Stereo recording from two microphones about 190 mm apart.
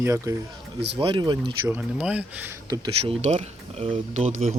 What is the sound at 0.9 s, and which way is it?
Speech, 25° right (ahead or behind).